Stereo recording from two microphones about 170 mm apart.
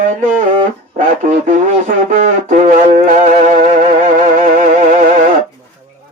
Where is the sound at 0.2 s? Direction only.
50° right (ahead or behind).